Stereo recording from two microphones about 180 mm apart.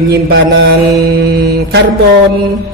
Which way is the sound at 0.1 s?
70° right (ahead or behind).